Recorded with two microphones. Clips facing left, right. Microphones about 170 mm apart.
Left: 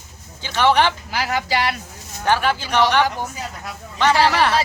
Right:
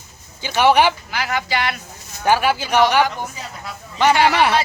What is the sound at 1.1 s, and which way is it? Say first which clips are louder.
Speech: left 1 dB; 35° left (ahead or behind).